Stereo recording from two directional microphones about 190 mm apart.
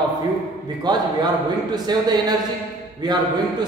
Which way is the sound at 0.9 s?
20° right (ahead or behind).